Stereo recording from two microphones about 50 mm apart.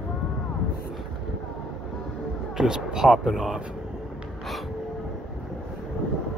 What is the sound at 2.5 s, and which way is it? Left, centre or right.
Speech, centre.